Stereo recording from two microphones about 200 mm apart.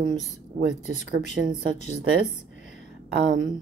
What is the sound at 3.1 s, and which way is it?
Speech, 70° right (ahead or behind).